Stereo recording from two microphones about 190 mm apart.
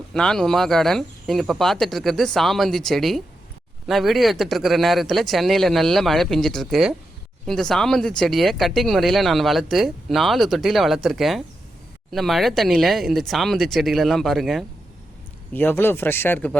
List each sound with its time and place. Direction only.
0.1 s speech: 5° left (ahead or behind)
15.5 s speech: 10° left (ahead or behind)